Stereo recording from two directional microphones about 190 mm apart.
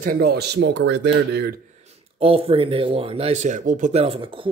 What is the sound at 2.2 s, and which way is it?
Speech, 30° right (ahead or behind).